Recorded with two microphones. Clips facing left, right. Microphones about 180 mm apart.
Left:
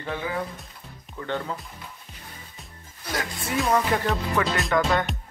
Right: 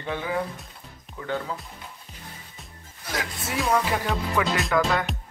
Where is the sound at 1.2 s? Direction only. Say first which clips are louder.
Even; 5° right (ahead or behind).